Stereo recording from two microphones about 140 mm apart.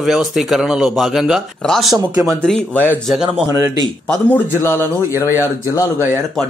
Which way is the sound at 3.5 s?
25° right (ahead or behind).